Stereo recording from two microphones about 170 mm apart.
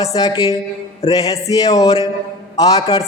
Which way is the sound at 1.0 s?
35° left (ahead or behind).